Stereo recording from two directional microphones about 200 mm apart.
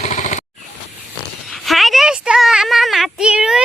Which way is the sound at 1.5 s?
Centre (ahead or behind).